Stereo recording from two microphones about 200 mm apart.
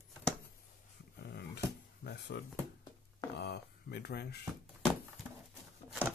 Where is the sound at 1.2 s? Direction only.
55° left (ahead or behind).